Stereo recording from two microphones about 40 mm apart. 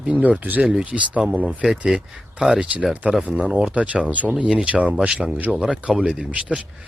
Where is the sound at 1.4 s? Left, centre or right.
Right.